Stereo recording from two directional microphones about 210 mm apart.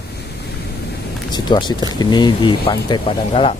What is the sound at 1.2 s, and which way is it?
Speech, 20° left (ahead or behind).